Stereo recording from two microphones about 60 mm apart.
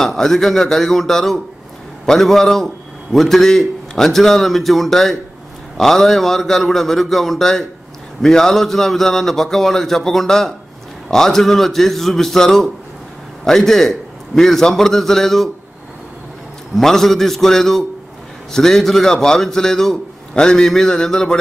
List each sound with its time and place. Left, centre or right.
0.0 s a man's voice: centre
16.7 s a man's voice: centre